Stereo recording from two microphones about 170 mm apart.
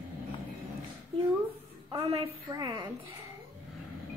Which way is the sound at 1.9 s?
25° right (ahead or behind).